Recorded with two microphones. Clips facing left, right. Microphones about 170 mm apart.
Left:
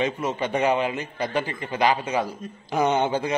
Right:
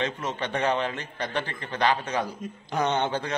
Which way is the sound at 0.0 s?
10° left (ahead or behind).